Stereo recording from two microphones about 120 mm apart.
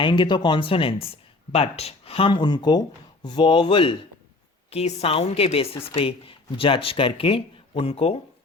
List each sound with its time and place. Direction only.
0.0 s a woman's voice: 40° left (ahead or behind)
4.7 s a woman's voice: 60° left (ahead or behind)